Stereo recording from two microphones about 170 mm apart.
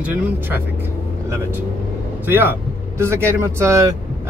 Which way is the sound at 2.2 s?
10° right (ahead or behind).